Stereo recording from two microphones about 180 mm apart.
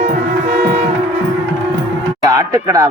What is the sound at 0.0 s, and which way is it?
Music, 35° right (ahead or behind).